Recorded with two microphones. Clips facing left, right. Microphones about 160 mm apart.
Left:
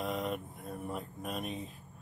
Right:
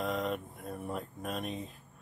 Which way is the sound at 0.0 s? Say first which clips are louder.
Right 2 dB; centre (ahead or behind).